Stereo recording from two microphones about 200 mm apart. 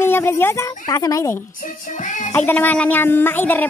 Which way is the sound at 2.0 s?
40° left (ahead or behind).